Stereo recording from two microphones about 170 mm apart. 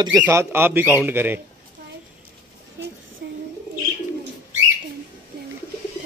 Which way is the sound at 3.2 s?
70° right (ahead or behind).